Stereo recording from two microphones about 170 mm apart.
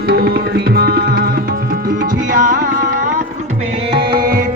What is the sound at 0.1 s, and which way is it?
Tabla, 65° right (ahead or behind).